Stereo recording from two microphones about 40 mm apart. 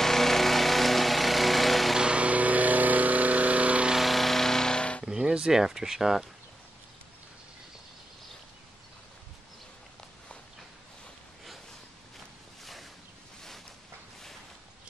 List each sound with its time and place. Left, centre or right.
0.0 s a sound: centre
2.0 s vehicle: right
3.9 s vehicle: centre
5.0 s speech: centre